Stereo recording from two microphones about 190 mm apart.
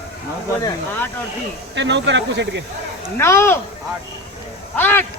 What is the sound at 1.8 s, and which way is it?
Speech, 70° right (ahead or behind).